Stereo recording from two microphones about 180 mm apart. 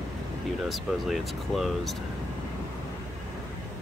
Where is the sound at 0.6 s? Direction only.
Centre (ahead or behind).